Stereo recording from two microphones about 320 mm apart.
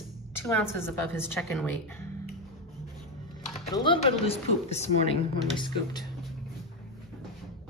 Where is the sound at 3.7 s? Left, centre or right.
Centre.